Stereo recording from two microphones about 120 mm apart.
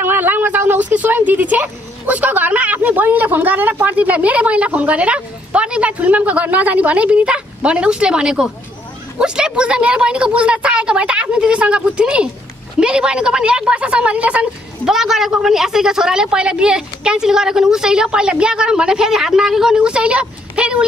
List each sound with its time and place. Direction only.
0.0 s a woman's voice: 15° right (ahead or behind)